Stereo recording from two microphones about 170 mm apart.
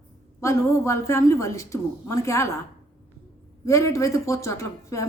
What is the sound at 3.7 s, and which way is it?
Speech, 20° left (ahead or behind).